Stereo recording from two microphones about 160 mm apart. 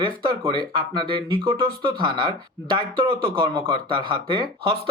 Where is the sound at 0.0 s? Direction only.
30° right (ahead or behind).